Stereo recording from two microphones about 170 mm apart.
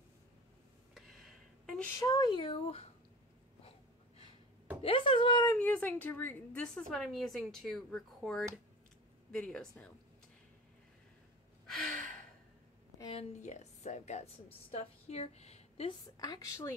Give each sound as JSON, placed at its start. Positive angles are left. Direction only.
{"t": 0.9, "sound": "a sound", "side_deg": 0}
{"t": 2.0, "sound": "speech", "side_deg": 20}
{"t": 4.8, "sound": "speech", "side_deg": 30}
{"t": 5.5, "sound": "a woman's voice", "side_deg": 10}
{"t": 11.8, "sound": "gasp", "side_deg": 0}
{"t": 13.0, "sound": "a woman's voice", "side_deg": 35}
{"t": 16.2, "sound": "speech", "side_deg": 20}